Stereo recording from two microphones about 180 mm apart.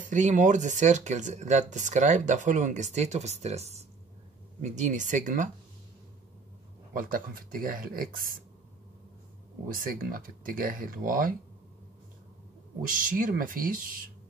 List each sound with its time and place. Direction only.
0.0 s speech: 45° right (ahead or behind)
6.9 s speech: 50° right (ahead or behind)
9.7 s speech: 50° right (ahead or behind)
12.8 s speech: 50° right (ahead or behind)